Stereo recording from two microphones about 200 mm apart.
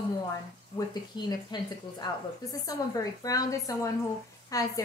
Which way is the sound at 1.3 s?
20° left (ahead or behind).